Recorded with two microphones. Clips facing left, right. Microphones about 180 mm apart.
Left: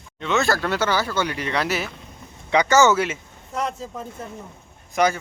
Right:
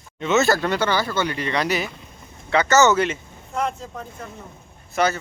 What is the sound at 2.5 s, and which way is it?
Speech, 15° left (ahead or behind).